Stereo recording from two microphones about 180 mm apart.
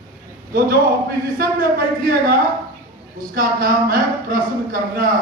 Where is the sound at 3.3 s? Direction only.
55° right (ahead or behind).